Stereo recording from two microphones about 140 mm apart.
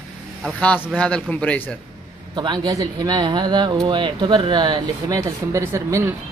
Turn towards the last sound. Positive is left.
turn(degrees=-20)  # may be behind; listen again after turning